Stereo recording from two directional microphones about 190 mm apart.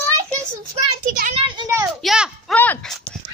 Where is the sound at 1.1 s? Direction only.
45° right (ahead or behind).